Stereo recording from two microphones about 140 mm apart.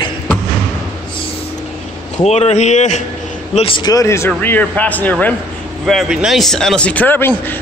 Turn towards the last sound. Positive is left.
turn(degrees=15)  # may be behind; listen again after turning